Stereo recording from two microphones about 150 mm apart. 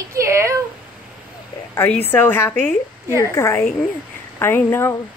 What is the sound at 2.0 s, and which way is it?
A woman's voice, 15° left (ahead or behind).